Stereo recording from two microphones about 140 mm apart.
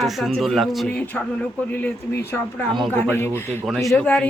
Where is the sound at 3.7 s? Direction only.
Centre (ahead or behind).